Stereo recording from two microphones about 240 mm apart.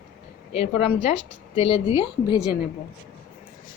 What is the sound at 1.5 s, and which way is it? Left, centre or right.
A woman's voice, left.